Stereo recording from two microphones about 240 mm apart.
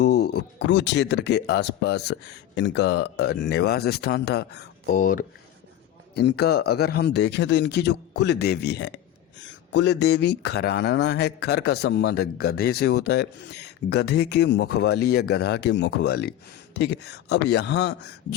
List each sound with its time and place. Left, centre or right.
0.0 s speech: left